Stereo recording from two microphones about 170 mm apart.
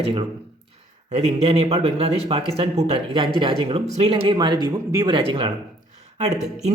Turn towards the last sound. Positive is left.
turn(degrees=-40)  # may be behind; listen again after turning